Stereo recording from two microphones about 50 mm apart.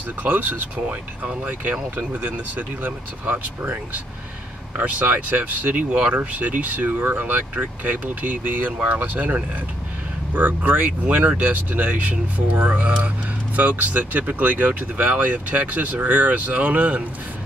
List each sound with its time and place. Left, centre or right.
0.2 s speech: right
2.1 s speech: right